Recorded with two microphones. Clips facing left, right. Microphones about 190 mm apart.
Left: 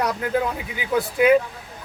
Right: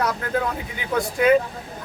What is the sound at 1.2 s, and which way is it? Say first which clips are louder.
Speech: left 1 dB; 10° left (ahead or behind).